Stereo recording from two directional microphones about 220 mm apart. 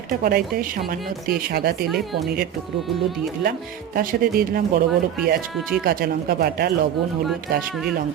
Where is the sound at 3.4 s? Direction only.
40° right (ahead or behind).